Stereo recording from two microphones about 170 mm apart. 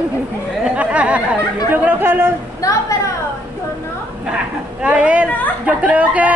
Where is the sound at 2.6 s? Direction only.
20° left (ahead or behind).